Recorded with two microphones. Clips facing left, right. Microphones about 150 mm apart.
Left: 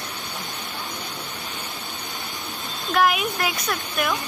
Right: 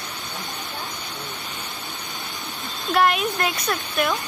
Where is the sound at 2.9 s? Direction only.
5° left (ahead or behind).